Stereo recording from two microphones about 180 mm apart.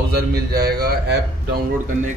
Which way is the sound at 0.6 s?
60° right (ahead or behind).